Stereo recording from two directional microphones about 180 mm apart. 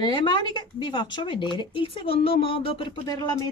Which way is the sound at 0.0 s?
25° left (ahead or behind).